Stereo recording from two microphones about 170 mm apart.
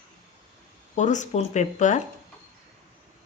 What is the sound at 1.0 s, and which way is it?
A woman's voice, 45° left (ahead or behind).